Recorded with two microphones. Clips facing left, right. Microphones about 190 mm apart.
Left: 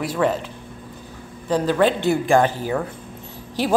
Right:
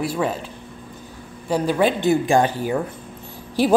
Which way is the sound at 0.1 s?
10° right (ahead or behind).